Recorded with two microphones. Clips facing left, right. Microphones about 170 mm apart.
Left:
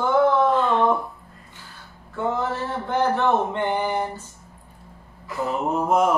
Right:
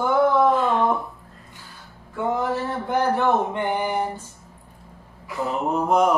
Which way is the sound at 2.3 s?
10° right (ahead or behind).